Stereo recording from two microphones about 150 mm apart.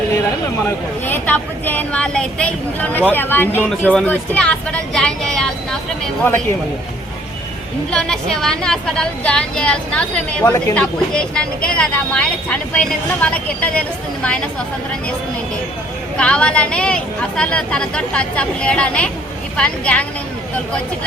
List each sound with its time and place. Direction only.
1.0 s a woman's voice: 15° left (ahead or behind)
7.9 s a woman's voice: 5° left (ahead or behind)
10.4 s a woman's voice: 15° left (ahead or behind)
11.1 s a woman's voice: 5° left (ahead or behind)
16.1 s a woman's voice: 5° left (ahead or behind)